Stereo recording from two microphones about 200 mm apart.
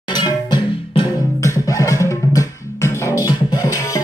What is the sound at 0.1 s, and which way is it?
Music, 20° left (ahead or behind).